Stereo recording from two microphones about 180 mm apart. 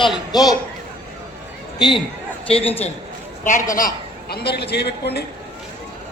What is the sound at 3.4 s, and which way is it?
A man's voice, 45° left (ahead or behind).